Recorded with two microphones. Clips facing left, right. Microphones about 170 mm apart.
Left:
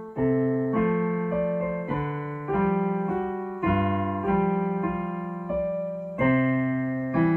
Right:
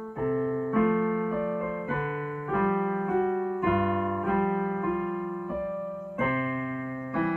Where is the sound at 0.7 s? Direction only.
5° left (ahead or behind).